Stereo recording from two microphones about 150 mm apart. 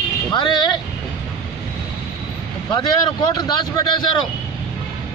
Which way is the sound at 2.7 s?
30° left (ahead or behind).